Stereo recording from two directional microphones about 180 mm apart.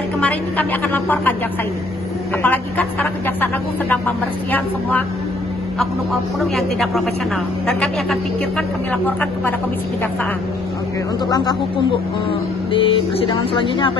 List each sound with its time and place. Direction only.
0.2 s a woman's voice: 10° left (ahead or behind)
2.4 s a woman's voice: 10° left (ahead or behind)
4.5 s a woman's voice: 10° left (ahead or behind)
6.4 s a man's voice: centre (ahead or behind)
11.2 s a sound: 20° left (ahead or behind)
12.7 s a sound: 30° left (ahead or behind)